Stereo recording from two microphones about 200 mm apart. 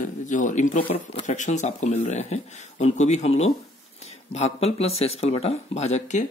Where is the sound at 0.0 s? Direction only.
40° left (ahead or behind).